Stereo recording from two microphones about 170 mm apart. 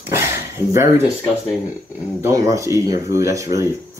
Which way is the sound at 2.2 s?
20° right (ahead or behind).